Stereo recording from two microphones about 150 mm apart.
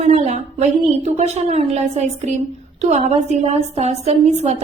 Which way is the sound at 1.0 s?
45° right (ahead or behind).